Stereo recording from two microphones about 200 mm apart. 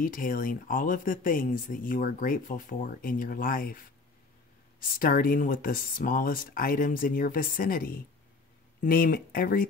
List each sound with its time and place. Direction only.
0.0 s speech: 45° left (ahead or behind)
4.9 s speech: 45° left (ahead or behind)